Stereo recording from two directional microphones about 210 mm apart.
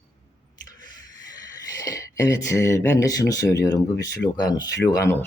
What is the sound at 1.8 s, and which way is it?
Speech, 15° left (ahead or behind).